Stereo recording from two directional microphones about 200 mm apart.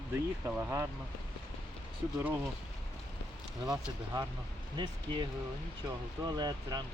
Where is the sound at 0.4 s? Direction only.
10° right (ahead or behind).